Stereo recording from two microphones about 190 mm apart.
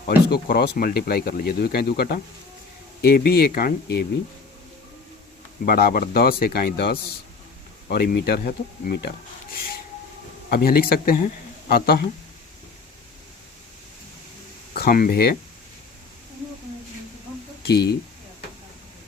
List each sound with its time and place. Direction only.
0.3 s speech: 55° left (ahead or behind)
5.6 s speech: 50° left (ahead or behind)
10.5 s speech: 50° left (ahead or behind)
14.8 s speech: 50° left (ahead or behind)
17.6 s speech: 60° left (ahead or behind)